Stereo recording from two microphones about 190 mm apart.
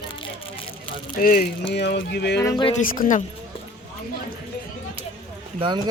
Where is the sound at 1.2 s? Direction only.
50° left (ahead or behind).